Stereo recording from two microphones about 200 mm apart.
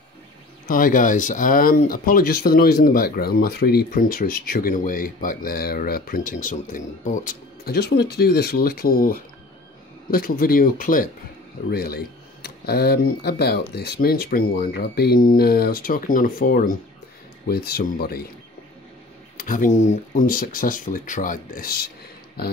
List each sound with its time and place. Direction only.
0.7 s speech: 45° left (ahead or behind)
19.3 s speech: 40° left (ahead or behind)